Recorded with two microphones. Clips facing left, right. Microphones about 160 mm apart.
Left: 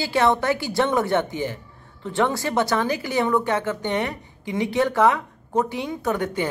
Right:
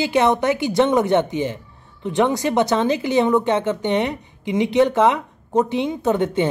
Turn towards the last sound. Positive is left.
turn(degrees=-20)  # may be behind; listen again after turning